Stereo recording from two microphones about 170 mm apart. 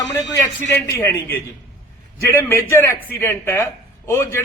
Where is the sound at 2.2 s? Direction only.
15° left (ahead or behind).